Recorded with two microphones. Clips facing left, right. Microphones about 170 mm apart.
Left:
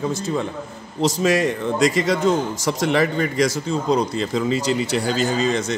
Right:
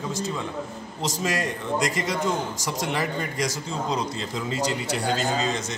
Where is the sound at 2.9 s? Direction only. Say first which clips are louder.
Left 8 dB; 70° left (ahead or behind).